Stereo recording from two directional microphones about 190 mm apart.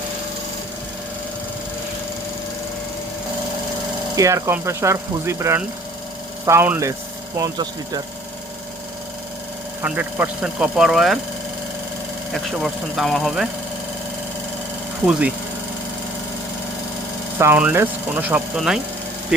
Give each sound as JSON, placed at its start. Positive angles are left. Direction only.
{"t": 4.1, "sound": "speech", "side_deg": -15}
{"t": 9.8, "sound": "speech", "side_deg": -10}
{"t": 12.3, "sound": "speech", "side_deg": 0}
{"t": 17.3, "sound": "speech", "side_deg": -10}